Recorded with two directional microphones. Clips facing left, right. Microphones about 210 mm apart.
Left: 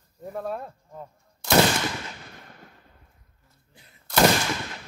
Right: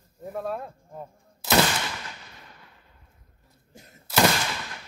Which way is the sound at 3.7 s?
45° right (ahead or behind).